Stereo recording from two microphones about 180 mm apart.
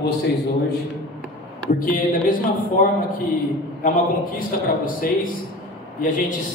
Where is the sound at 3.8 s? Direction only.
50° left (ahead or behind).